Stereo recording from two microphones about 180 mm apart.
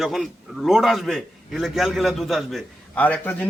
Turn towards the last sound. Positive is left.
turn(degrees=10)  # may be behind; listen again after turning